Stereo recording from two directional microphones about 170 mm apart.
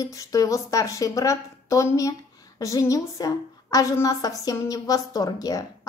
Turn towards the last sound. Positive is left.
turn(degrees=20)  # may be behind; listen again after turning